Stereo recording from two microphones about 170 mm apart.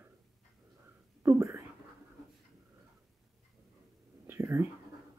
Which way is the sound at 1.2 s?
15° right (ahead or behind).